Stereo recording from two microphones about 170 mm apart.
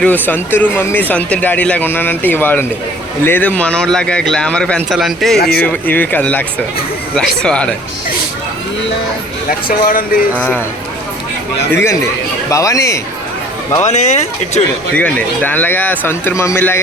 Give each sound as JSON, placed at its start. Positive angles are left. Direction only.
{"t": 0.0, "sound": "a man's voice", "side_deg": 10}
{"t": 5.4, "sound": "speech", "side_deg": 65}
{"t": 5.6, "sound": "a man's voice", "side_deg": 10}
{"t": 9.6, "sound": "speech", "side_deg": 60}
{"t": 10.3, "sound": "speech", "side_deg": 10}
{"t": 11.7, "sound": "speech", "side_deg": 15}
{"t": 13.8, "sound": "speech", "side_deg": 40}
{"t": 14.9, "sound": "speech", "side_deg": 10}